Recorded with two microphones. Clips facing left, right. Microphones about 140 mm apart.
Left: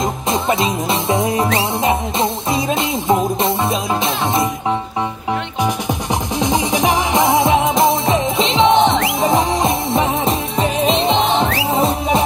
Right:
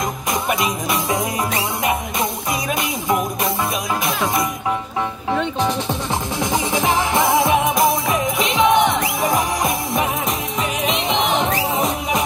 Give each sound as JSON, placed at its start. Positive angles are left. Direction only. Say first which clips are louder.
{"t": 0.0, "sound": "music", "louder": "left 4 dB", "side_deg": 25}
{"t": 6.4, "sound": "music", "louder": "left 4 dB", "side_deg": 20}